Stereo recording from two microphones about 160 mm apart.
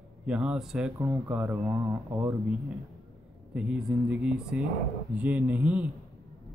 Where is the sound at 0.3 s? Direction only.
5° right (ahead or behind).